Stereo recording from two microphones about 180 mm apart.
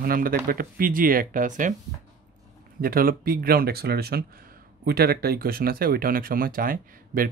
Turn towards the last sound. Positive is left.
turn(degrees=-50)  # may be behind; listen again after turning